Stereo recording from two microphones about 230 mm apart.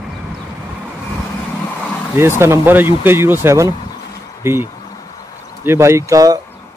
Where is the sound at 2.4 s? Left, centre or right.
Centre.